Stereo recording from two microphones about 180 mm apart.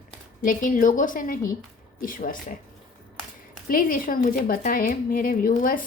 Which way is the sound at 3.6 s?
50° left (ahead or behind).